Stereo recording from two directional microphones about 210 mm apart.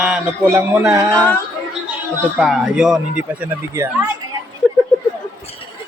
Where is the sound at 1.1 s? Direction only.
5° left (ahead or behind).